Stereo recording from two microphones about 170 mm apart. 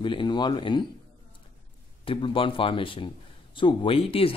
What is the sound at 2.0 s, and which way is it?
Speech, 30° left (ahead or behind).